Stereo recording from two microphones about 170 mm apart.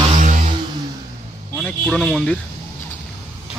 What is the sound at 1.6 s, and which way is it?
Speech, 5° left (ahead or behind).